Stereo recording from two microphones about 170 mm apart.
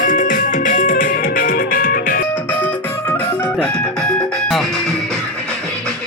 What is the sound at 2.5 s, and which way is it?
Music, 10° left (ahead or behind).